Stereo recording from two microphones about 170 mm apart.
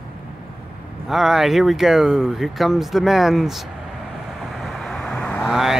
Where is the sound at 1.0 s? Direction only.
Centre (ahead or behind).